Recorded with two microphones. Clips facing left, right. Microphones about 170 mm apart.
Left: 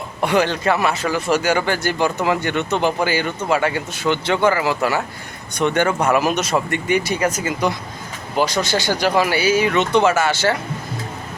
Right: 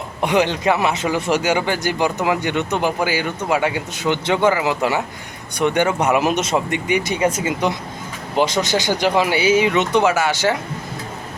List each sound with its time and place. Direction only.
0.2 s speech: 15° right (ahead or behind)